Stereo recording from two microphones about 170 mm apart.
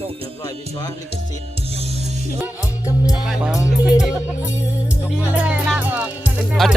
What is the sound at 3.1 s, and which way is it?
Speech, 5° right (ahead or behind).